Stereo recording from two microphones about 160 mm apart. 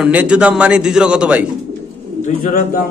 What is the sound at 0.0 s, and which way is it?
A man's voice, 10° right (ahead or behind).